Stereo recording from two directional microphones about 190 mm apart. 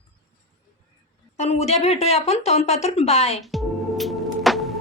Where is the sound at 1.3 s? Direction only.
35° left (ahead or behind).